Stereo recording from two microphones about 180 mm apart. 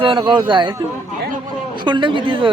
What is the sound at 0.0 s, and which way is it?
Speech, 25° right (ahead or behind).